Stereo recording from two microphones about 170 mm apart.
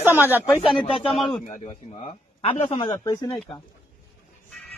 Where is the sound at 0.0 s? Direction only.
10° right (ahead or behind).